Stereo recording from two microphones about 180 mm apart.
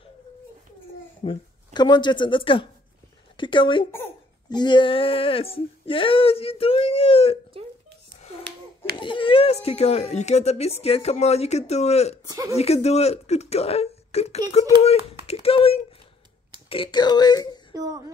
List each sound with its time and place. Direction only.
1.2 s speech: 25° left (ahead or behind)
8.2 s a sound: 35° left (ahead or behind)
8.9 s speech: 25° left (ahead or behind)
12.3 s speech: 20° right (ahead or behind)
12.5 s speech: 35° left (ahead or behind)
17.7 s speech: 20° right (ahead or behind)